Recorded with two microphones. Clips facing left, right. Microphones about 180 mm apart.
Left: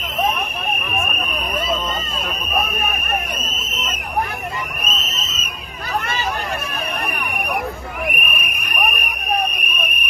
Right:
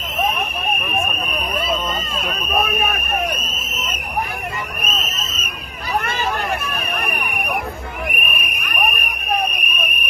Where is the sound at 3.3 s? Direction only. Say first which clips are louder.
Right 2 dB; 65° right (ahead or behind).